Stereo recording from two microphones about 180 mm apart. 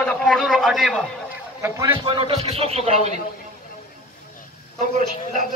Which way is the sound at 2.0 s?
25° right (ahead or behind).